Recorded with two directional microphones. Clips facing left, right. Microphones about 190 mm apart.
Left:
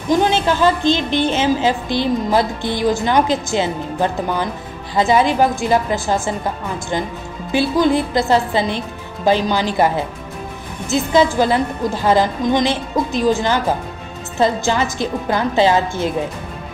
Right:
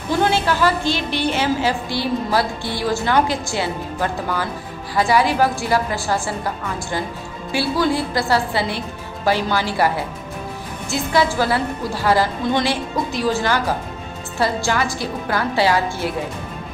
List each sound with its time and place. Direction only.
0.1 s a woman's voice: 20° left (ahead or behind)